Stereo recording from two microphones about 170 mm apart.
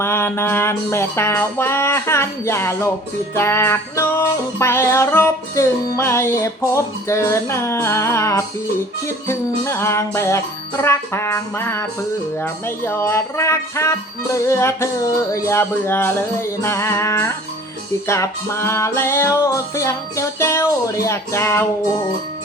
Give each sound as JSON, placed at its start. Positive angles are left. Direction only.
{"t": 0.0, "sound": "music", "side_deg": 15}